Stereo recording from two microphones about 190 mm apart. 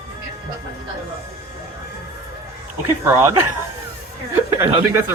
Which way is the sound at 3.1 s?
15° right (ahead or behind).